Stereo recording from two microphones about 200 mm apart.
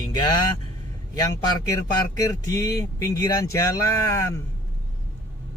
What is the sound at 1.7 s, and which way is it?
Speech, 20° left (ahead or behind).